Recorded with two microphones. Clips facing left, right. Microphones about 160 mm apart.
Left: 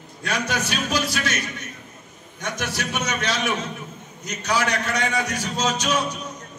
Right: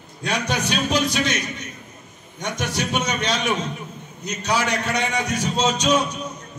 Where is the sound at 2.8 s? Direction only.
20° right (ahead or behind).